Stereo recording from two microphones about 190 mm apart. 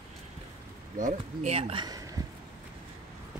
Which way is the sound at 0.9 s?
40° right (ahead or behind).